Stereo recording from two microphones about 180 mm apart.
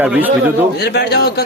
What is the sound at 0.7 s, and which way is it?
Speech, 65° left (ahead or behind).